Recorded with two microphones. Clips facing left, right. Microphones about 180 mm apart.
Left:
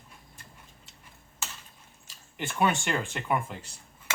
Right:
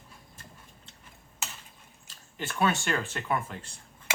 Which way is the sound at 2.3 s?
15° left (ahead or behind).